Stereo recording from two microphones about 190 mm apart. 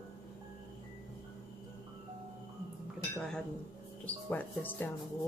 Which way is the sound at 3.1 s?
5° left (ahead or behind).